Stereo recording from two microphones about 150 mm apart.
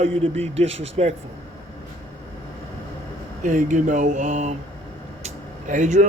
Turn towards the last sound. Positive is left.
turn(degrees=-55)  # may be behind; listen again after turning